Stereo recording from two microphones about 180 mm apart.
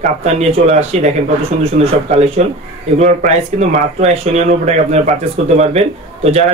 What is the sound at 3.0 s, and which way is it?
Speech, 40° right (ahead or behind).